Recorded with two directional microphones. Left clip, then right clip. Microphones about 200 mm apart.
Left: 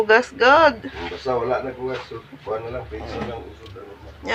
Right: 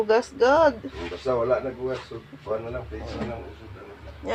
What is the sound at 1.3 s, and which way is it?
Speech, 30° right (ahead or behind).